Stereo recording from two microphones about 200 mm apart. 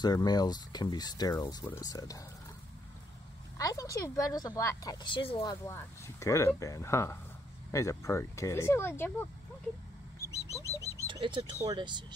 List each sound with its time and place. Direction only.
0.0 s speech: 20° left (ahead or behind)
3.5 s a woman's voice: 15° left (ahead or behind)
10.3 s bird: 15° left (ahead or behind)
11.1 s speech: 25° right (ahead or behind)